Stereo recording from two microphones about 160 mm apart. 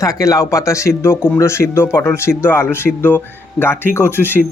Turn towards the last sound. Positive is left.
turn(degrees=15)  # may be behind; listen again after turning